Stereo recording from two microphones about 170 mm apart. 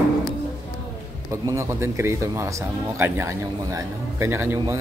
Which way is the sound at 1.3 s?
15° right (ahead or behind).